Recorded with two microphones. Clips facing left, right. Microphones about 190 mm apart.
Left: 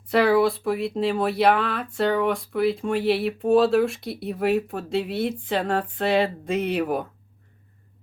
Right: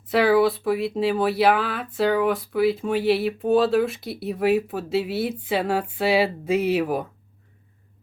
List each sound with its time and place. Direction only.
0.1 s speech: centre (ahead or behind)